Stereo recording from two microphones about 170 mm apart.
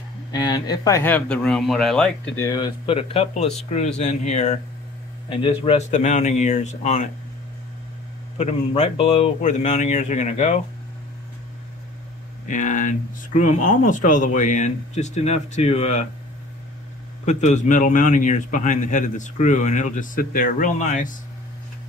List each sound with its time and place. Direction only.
0.3 s speech: 25° left (ahead or behind); by 2.4 s 5° left (ahead or behind)
2.4 s speech: 25° left (ahead or behind)
3.0 s a man's voice: 35° left (ahead or behind)
5.3 s a man's voice: 30° left (ahead or behind)
8.4 s a man's voice: 40° left (ahead or behind)
12.4 s a man's voice: 50° left (ahead or behind)
17.2 s a man's voice: 40° left (ahead or behind)